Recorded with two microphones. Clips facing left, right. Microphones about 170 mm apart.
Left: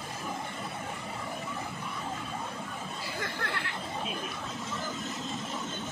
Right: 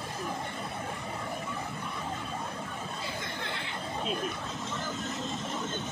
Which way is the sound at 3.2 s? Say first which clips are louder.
Left 2 dB; 80° left.